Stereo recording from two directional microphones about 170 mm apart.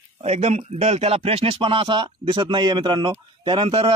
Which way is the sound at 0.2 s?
40° right (ahead or behind).